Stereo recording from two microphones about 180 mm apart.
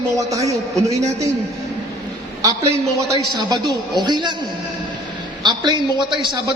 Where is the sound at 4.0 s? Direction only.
25° right (ahead or behind).